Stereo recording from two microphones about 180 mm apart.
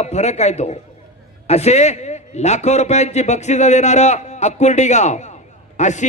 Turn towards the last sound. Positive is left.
turn(degrees=40)  # may be behind; listen again after turning